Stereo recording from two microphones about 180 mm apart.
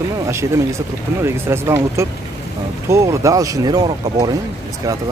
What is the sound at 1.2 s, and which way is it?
Speech, 15° right (ahead or behind).